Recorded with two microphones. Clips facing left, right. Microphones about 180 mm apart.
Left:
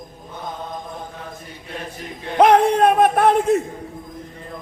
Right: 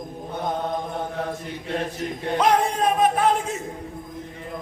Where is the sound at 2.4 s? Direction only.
65° left (ahead or behind).